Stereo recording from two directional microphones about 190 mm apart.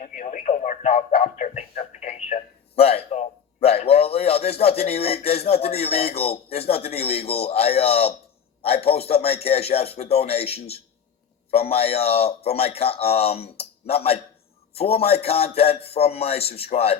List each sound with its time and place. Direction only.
0.0 s speech: 40° left (ahead or behind)